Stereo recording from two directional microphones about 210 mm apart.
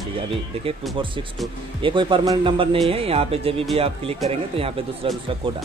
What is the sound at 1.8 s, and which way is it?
Speech, 25° right (ahead or behind).